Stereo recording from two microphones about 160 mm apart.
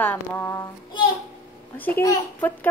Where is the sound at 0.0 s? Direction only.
10° left (ahead or behind).